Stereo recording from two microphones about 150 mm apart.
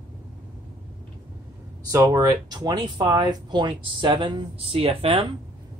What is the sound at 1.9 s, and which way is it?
Speech, 20° right (ahead or behind).